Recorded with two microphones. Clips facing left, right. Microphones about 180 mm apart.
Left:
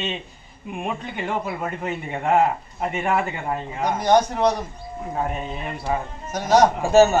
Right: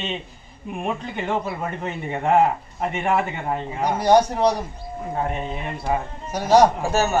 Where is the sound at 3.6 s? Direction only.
10° right (ahead or behind).